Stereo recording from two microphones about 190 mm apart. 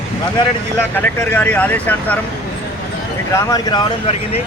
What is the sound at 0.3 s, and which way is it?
Speech, 10° left (ahead or behind).